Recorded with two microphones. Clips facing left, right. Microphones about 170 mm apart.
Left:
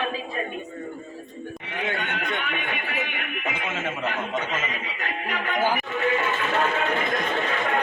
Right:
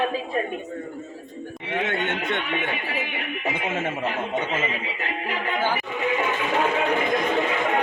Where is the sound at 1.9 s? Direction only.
25° right (ahead or behind).